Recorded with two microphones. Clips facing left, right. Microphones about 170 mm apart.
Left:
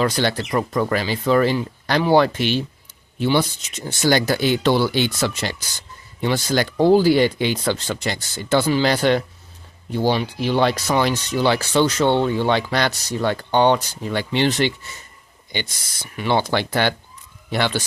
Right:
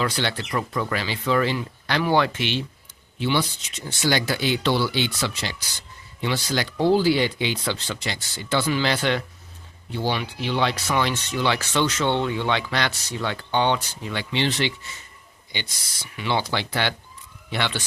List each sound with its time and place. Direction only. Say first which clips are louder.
0.0 s speech: left 5 dB; 40° left (ahead or behind)
16.1 s speech: left 5 dB; 50° left (ahead or behind)